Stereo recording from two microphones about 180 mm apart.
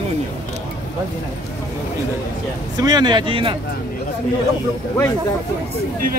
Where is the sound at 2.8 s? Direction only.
25° right (ahead or behind).